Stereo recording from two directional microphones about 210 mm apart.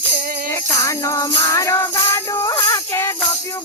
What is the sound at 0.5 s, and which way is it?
Music, 15° left (ahead or behind).